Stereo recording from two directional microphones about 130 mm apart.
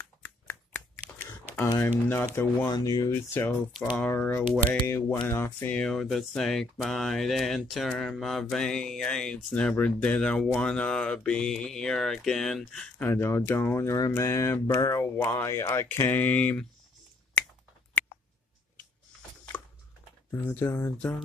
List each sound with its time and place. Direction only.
0.2 s a sound: 15° left (ahead or behind)
1.6 s speech: 15° left (ahead or behind)
2.7 s speech: 30° left (ahead or behind)
3.2 s speech: 20° left (ahead or behind)
13.1 s speech: 20° left (ahead or behind)
19.5 s a sound: 10° left (ahead or behind)
20.2 s speech: 15° left (ahead or behind)